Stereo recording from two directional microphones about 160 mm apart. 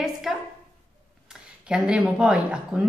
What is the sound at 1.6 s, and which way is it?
A woman's voice, 5° right (ahead or behind).